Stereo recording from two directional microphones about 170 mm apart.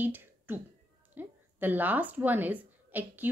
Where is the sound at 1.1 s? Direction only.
10° right (ahead or behind).